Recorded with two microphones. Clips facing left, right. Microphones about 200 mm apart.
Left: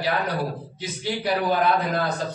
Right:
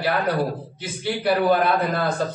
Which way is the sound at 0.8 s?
55° right (ahead or behind).